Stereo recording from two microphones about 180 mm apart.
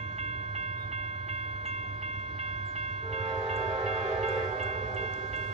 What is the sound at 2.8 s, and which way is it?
Train, 35° right (ahead or behind).